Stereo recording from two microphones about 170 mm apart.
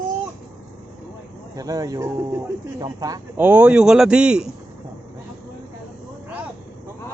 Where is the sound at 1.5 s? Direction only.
20° right (ahead or behind); by 4.5 s 5° right (ahead or behind).